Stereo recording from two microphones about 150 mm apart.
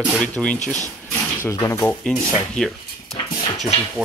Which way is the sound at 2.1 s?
5° left (ahead or behind).